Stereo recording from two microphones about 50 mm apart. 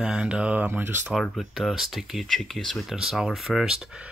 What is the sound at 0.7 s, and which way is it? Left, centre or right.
Speech, right.